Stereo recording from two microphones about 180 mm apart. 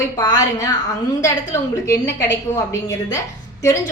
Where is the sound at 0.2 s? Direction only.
20° left (ahead or behind).